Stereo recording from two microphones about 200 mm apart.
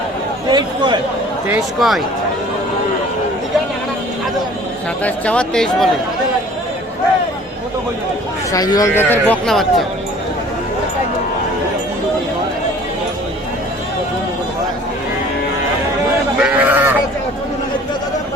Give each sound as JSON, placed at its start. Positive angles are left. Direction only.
{"t": 0.5, "sound": "a sound", "side_deg": -20}
{"t": 1.8, "sound": "speech", "side_deg": 0}
{"t": 5.0, "sound": "speech", "side_deg": 5}
{"t": 8.5, "sound": "speech", "side_deg": 20}
{"t": 16.4, "sound": "sheep", "side_deg": -10}